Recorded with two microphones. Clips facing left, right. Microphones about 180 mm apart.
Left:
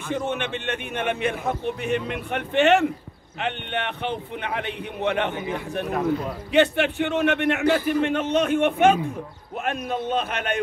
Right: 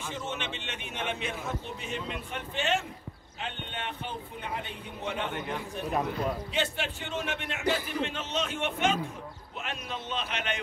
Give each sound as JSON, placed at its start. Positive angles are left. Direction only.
{"t": 0.1, "sound": "a man's voice", "side_deg": 60}
{"t": 6.5, "sound": "a man's voice", "side_deg": 65}